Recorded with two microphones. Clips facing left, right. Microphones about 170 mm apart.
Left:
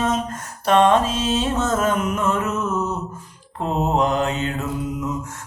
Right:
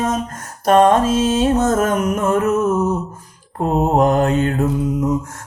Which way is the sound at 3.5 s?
50° right (ahead or behind).